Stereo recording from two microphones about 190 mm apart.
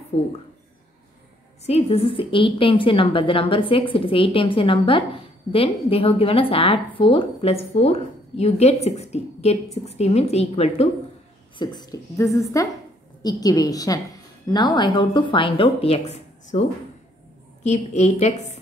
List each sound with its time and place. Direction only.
0.1 s a woman's voice: 35° left (ahead or behind)
1.7 s a woman's voice: 30° left (ahead or behind)
11.5 s a woman's voice: 20° left (ahead or behind)
17.6 s a woman's voice: 35° left (ahead or behind)